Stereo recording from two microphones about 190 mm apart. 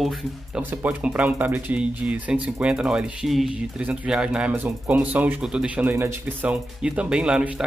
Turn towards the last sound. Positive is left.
turn(degrees=-5)  # may be behind; listen again after turning